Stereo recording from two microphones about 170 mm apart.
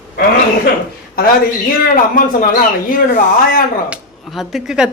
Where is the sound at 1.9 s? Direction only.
55° left (ahead or behind).